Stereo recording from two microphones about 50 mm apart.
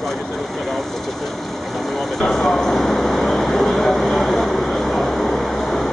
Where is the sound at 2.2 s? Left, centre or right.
Centre.